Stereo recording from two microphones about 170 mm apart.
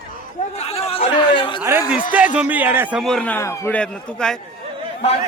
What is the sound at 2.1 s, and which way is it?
Speech, 10° right (ahead or behind).